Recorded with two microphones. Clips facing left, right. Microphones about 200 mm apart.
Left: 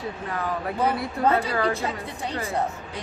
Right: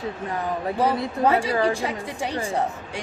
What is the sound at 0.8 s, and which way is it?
Speech, 30° right (ahead or behind).